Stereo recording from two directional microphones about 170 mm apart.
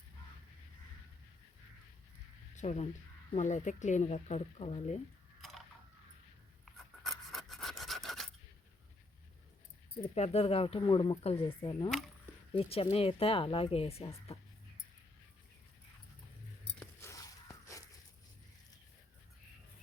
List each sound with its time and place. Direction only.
2.6 s speech: 40° left (ahead or behind)
6.7 s filing: centre (ahead or behind)
10.2 s speech: 35° left (ahead or behind)
12.5 s speech: 35° left (ahead or behind)
16.8 s a sound: 15° left (ahead or behind)